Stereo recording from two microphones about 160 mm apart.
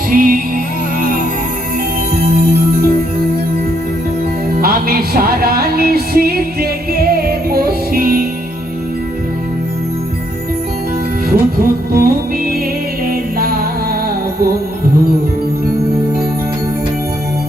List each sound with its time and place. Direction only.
0.1 s music: 60° right (ahead or behind)
2.1 s music: 70° right (ahead or behind)
4.6 s music: 70° right (ahead or behind)
11.3 s music: 70° right (ahead or behind)